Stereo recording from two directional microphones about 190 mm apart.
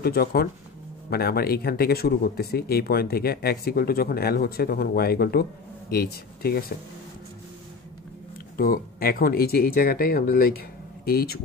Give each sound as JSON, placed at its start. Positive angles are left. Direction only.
{"t": 0.0, "sound": "speech", "side_deg": 55}
{"t": 8.5, "sound": "speech", "side_deg": 50}